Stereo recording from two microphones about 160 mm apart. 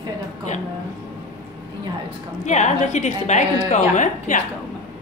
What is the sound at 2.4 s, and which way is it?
A woman's voice, 50° left (ahead or behind).